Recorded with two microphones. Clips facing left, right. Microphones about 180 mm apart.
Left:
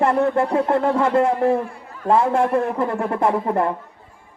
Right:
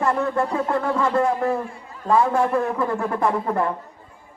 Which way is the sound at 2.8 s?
25° left (ahead or behind).